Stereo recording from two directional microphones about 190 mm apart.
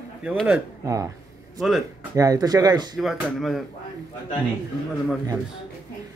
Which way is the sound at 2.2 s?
20° right (ahead or behind).